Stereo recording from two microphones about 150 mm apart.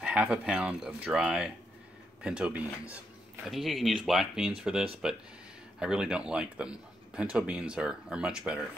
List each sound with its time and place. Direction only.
0.0 s speech: 5° right (ahead or behind)